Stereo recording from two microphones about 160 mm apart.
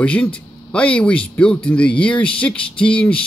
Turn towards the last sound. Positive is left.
turn(degrees=5)  # may be behind; listen again after turning